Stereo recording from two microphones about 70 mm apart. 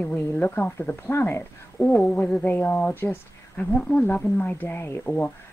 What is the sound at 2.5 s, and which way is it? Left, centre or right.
Speech, left.